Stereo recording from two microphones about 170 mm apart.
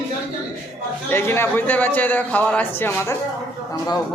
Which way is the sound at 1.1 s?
15° left (ahead or behind).